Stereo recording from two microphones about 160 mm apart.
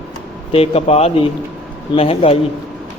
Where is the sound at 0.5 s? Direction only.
35° left (ahead or behind).